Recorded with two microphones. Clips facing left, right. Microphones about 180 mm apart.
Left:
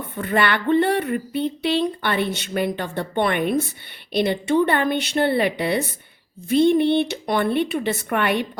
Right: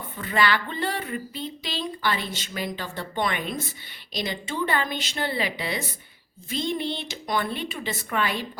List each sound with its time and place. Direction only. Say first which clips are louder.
0.2 s speech: left 3 dB; 60° left (ahead or behind)